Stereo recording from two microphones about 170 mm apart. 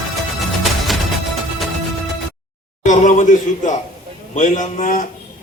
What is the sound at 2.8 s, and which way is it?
Speech, 45° left (ahead or behind).